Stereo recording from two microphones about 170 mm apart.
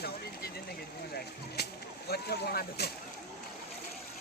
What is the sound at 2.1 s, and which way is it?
Speech, 65° left (ahead or behind).